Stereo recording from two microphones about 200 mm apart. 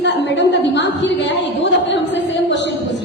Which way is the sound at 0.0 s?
60° left (ahead or behind).